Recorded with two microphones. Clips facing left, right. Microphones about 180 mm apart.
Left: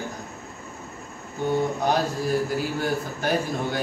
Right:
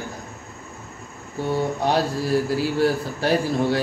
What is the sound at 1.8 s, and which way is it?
A man's voice, 30° right (ahead or behind).